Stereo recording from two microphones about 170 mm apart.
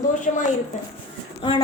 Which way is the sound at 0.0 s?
50° left (ahead or behind).